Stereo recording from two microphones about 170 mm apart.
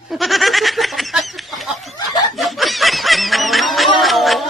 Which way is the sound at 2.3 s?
Centre (ahead or behind).